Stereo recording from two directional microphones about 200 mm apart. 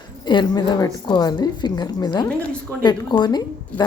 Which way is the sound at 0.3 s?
20° left (ahead or behind).